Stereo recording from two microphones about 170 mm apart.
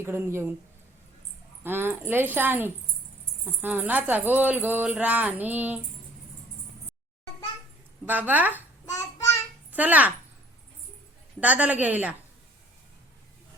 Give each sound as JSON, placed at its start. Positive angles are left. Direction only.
{"t": 0.0, "sound": "speech", "side_deg": -15}
{"t": 1.6, "sound": "speech", "side_deg": -10}
{"t": 8.0, "sound": "speech", "side_deg": -10}
{"t": 8.9, "sound": "child singing", "side_deg": 20}
{"t": 9.7, "sound": "speech", "side_deg": -10}
{"t": 11.3, "sound": "speech", "side_deg": -10}